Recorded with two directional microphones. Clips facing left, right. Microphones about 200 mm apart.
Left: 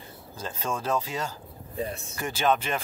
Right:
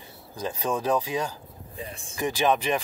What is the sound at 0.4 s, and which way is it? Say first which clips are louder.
Speech: right 4 dB; 15° right (ahead or behind).